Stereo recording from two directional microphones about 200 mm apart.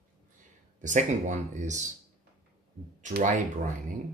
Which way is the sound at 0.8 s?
40° right (ahead or behind).